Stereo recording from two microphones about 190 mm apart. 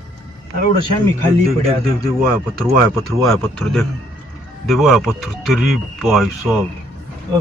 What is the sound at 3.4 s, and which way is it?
Speech, centre (ahead or behind).